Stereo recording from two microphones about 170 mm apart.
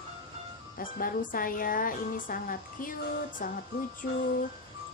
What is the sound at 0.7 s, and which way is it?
Speech, 55° left (ahead or behind).